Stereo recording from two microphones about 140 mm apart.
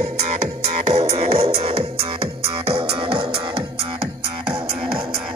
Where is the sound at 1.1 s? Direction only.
45° right (ahead or behind).